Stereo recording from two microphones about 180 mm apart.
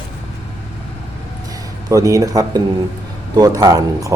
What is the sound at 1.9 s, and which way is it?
Speech, 20° right (ahead or behind).